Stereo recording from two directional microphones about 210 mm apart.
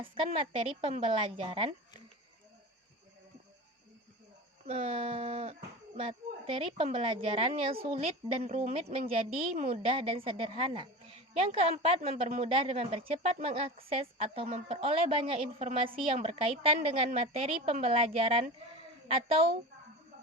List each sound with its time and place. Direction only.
0.3 s a woman's voice: 25° right (ahead or behind)
4.6 s a woman's voice: 30° right (ahead or behind)